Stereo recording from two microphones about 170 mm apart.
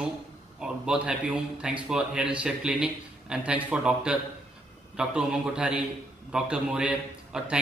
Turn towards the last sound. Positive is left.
turn(degrees=-5)  # may be behind; listen again after turning